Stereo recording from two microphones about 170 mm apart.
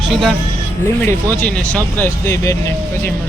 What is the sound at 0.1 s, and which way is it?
Speech, centre (ahead or behind).